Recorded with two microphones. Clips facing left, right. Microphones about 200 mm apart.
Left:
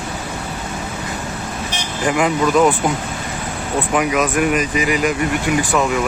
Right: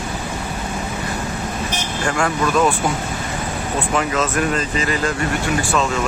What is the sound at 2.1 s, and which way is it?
Speech, 15° left (ahead or behind).